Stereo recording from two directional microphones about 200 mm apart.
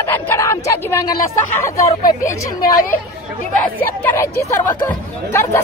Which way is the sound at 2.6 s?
45° left (ahead or behind).